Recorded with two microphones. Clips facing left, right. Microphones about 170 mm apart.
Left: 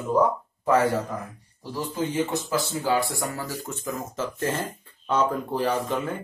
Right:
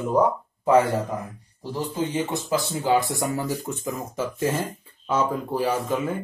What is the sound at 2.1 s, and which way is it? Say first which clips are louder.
Speech: left 1 dB; 20° right (ahead or behind).